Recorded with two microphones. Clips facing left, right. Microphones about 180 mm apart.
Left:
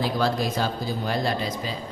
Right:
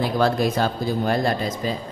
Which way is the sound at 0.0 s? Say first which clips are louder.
Right 4 dB; 55° right (ahead or behind).